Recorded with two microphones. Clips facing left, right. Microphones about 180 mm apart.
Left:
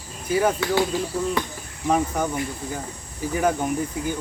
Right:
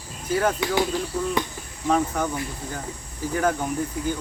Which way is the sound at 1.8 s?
10° left (ahead or behind).